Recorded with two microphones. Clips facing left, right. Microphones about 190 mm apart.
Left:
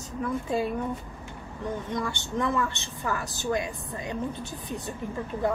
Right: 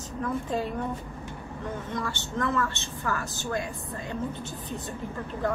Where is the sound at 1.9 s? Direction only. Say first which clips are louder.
Left 2 dB; 15° left (ahead or behind).